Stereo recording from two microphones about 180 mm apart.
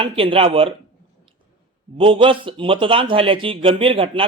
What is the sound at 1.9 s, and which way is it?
A man's voice, 30° right (ahead or behind).